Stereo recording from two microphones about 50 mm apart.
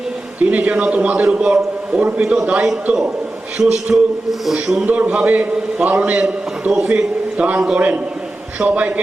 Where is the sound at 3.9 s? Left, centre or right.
Centre.